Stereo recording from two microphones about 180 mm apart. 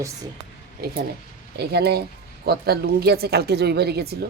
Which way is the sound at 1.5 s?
60° right (ahead or behind).